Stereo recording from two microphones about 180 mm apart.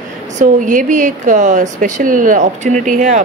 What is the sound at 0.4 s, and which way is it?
Speech, 45° right (ahead or behind).